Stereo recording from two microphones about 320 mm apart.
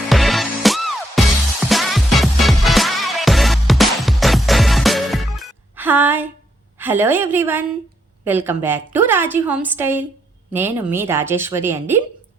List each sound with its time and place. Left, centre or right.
0.1 s music: centre
6.7 s a woman's voice: centre